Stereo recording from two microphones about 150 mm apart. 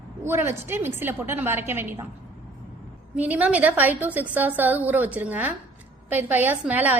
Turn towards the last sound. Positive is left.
turn(degrees=-10)  # may be behind; listen again after turning